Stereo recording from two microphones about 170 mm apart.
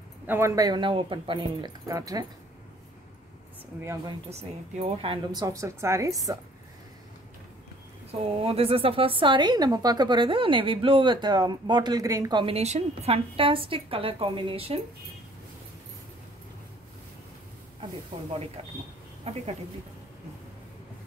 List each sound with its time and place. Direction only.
0.3 s speech: 20° right (ahead or behind)
3.8 s speech: 15° right (ahead or behind)
4.3 s speech: 40° right (ahead or behind); by 6.1 s 15° right (ahead or behind)
8.1 s a woman's voice: 35° right (ahead or behind)
19.2 s a woman's voice: 35° right (ahead or behind)